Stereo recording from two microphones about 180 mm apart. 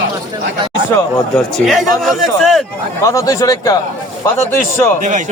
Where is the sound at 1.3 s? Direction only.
Centre (ahead or behind).